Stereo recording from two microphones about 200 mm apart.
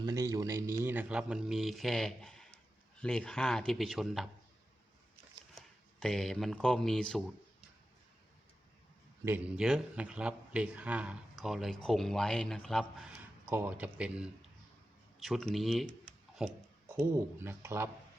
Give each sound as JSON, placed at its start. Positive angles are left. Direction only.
{"t": 0.0, "sound": "a man's voice", "side_deg": -20}
{"t": 5.5, "sound": "speech", "side_deg": 0}
{"t": 9.2, "sound": "a man's voice", "side_deg": -10}
{"t": 13.5, "sound": "speech", "side_deg": -10}
{"t": 16.9, "sound": "speech", "side_deg": -15}